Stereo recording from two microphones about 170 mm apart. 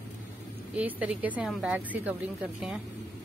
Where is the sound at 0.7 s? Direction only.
10° right (ahead or behind).